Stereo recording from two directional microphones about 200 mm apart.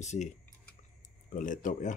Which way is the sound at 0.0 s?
35° left (ahead or behind).